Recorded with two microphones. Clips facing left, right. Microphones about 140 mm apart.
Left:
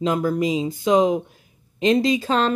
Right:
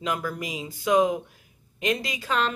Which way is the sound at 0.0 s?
30° left (ahead or behind).